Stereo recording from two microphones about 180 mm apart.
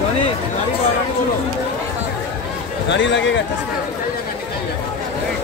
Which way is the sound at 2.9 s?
85° left.